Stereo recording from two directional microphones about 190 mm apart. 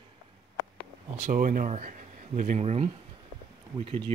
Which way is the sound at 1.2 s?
45° right (ahead or behind).